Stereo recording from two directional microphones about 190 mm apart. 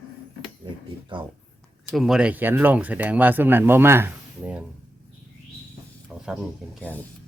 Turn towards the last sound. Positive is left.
turn(degrees=10)  # may be behind; listen again after turning